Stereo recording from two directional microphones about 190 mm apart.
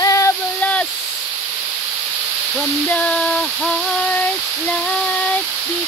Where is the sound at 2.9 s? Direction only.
5° left (ahead or behind).